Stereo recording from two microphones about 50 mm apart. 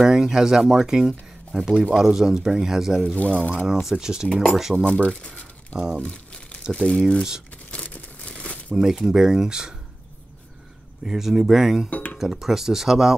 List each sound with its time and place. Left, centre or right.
0.0 s speech: centre
3.2 s speech: left
3.8 s speech: centre
4.9 s crumpling: centre
6.7 s speech: centre
7.7 s a sound: left
8.3 s crumpling: left
8.7 s speech: centre
11.1 s speech: centre
11.9 s a sound: left
12.2 s speech: centre